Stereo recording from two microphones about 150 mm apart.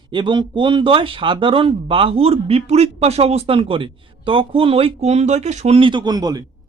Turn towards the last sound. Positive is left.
turn(degrees=-25)  # may be behind; listen again after turning